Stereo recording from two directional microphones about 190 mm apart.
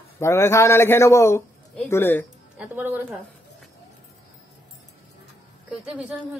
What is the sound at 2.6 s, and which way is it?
Speech, 10° right (ahead or behind).